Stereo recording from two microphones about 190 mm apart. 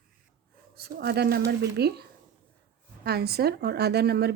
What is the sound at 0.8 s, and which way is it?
Speech, 55° right (ahead or behind).